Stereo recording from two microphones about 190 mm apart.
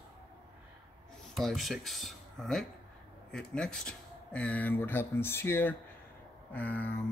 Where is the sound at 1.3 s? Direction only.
Centre (ahead or behind).